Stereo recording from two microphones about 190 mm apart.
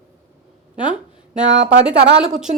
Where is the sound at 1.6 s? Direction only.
70° right (ahead or behind).